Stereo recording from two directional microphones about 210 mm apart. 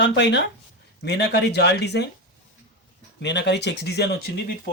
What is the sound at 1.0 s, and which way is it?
Speech, 55° left (ahead or behind).